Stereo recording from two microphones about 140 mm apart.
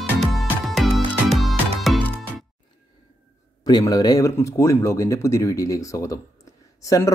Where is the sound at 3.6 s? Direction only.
30° left (ahead or behind).